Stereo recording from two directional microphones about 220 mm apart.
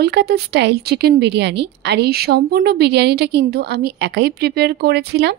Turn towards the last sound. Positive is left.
turn(degrees=-50)  # may be behind; listen again after turning